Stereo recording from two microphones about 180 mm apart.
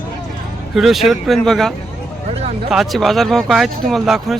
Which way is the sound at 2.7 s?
Centre (ahead or behind).